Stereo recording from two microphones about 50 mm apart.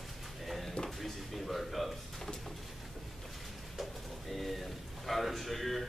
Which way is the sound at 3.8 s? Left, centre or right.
Centre.